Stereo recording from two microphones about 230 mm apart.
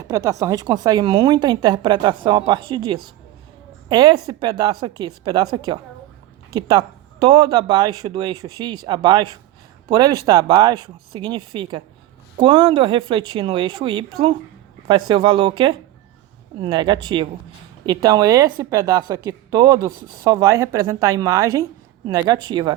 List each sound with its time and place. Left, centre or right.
0.0 s a woman's voice: centre